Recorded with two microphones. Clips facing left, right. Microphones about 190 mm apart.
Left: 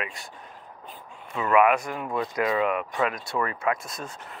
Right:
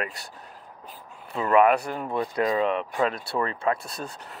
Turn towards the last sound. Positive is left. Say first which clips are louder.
# right 1 dB
turn(degrees=-35)  # may be behind; listen again after turning